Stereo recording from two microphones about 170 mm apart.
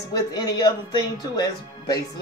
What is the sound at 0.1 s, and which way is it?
Speech, 25° left (ahead or behind).